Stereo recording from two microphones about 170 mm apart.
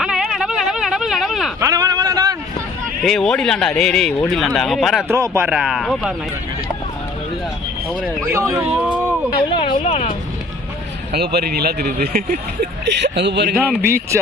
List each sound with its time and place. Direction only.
0.0 s a sound: 5° right (ahead or behind)
1.6 s a sound: 20° right (ahead or behind)
3.0 s speech: centre (ahead or behind)
5.0 s a man's voice: 15° right (ahead or behind)
5.5 s speech: 5° right (ahead or behind)
8.0 s a man's voice: 15° right (ahead or behind)
8.8 s a sound: 10° right (ahead or behind)
9.3 s a sound: 30° left (ahead or behind)
9.8 s speech: 40° left (ahead or behind)
11.1 s speech: 70° right (ahead or behind)
12.8 s speech: 90° right
13.6 s a man's voice: 15° right (ahead or behind)